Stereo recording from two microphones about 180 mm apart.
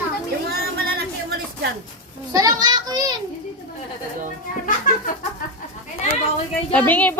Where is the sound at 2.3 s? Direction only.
20° right (ahead or behind).